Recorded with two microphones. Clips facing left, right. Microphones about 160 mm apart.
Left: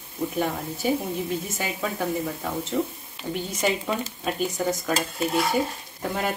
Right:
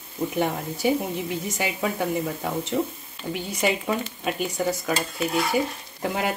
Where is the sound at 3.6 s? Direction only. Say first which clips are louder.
Right 2 dB; 5° right (ahead or behind).